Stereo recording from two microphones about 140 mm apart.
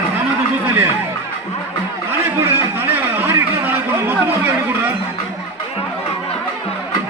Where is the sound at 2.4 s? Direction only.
15° right (ahead or behind).